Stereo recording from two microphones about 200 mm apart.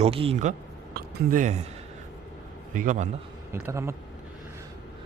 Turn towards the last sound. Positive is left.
turn(degrees=-15)  # may be behind; listen again after turning